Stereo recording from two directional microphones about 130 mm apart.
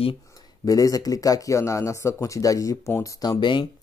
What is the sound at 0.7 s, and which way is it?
Speech, 25° left (ahead or behind).